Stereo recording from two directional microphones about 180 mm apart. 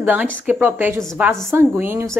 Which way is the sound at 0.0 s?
10° right (ahead or behind).